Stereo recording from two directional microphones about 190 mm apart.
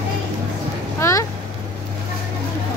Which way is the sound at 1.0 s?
15° left (ahead or behind).